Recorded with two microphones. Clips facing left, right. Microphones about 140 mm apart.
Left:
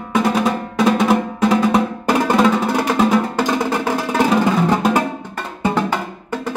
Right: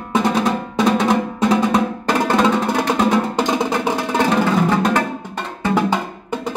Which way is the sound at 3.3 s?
15° right (ahead or behind).